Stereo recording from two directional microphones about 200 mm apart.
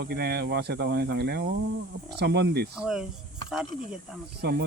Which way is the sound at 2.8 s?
5° right (ahead or behind).